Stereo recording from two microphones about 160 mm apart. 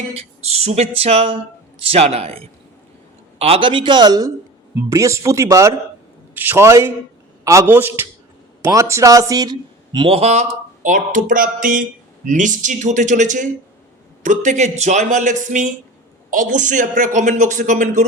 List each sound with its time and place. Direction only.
0.1 s music: 40° right (ahead or behind)
4.7 s a man's voice: 15° right (ahead or behind); by 10.4 s 40° right (ahead or behind)
10.8 s speech: 55° right (ahead or behind)